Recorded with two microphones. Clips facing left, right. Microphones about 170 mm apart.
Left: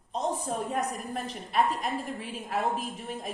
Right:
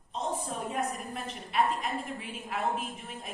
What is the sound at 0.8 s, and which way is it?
A woman's voice, 40° left (ahead or behind).